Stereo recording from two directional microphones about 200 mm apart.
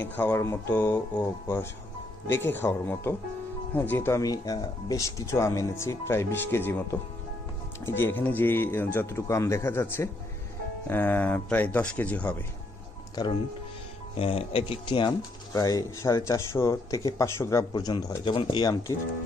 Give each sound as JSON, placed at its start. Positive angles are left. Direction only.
{"t": 0.0, "sound": "speech", "side_deg": 10}
{"t": 13.1, "sound": "speech", "side_deg": 20}